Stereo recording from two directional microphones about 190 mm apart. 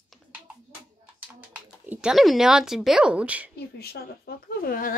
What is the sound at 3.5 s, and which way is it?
Speech, 55° left (ahead or behind).